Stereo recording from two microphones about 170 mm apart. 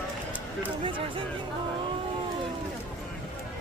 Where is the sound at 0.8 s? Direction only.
30° right (ahead or behind).